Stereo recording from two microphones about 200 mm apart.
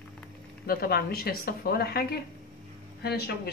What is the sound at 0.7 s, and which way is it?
Speech, 50° left (ahead or behind).